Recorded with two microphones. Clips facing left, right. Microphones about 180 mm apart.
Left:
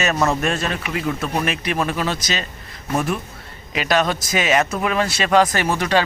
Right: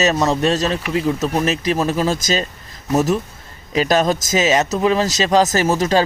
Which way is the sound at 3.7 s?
40° right (ahead or behind).